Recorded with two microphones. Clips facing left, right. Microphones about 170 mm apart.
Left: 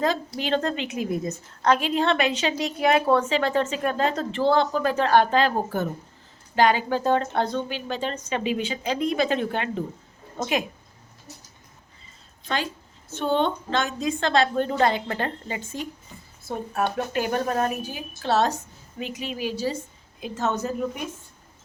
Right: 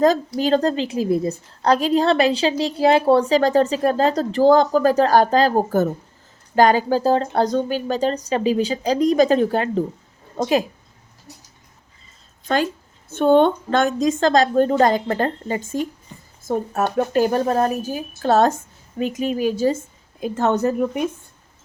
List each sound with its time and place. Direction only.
0.0 s a woman's voice: 40° right (ahead or behind)
12.5 s a woman's voice: 45° right (ahead or behind); by 20.8 s 60° right (ahead or behind)